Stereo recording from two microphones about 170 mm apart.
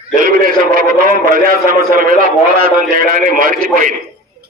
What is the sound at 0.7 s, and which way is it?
A man's voice, 55° right (ahead or behind).